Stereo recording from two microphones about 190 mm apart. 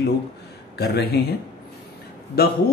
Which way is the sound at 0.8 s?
55° left (ahead or behind).